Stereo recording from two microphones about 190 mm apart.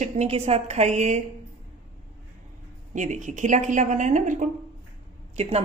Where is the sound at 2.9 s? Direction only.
40° right (ahead or behind).